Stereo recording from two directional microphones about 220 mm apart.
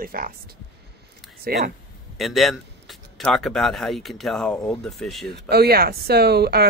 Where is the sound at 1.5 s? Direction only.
45° right (ahead or behind).